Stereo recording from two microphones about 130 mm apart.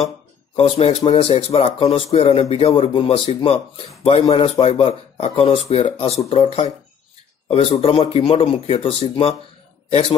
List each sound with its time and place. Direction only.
0.6 s speech: 50° left (ahead or behind)